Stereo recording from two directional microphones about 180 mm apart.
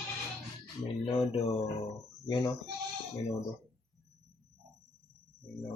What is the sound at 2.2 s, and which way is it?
Speech, 25° left (ahead or behind).